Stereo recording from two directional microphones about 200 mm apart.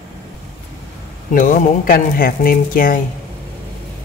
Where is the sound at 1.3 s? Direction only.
40° left (ahead or behind).